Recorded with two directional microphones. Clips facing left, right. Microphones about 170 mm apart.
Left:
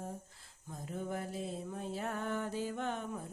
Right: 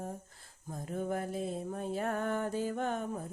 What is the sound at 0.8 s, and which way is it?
Music, 50° right (ahead or behind).